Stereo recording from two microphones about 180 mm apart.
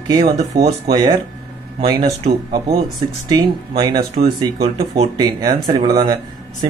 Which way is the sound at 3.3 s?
20° right (ahead or behind).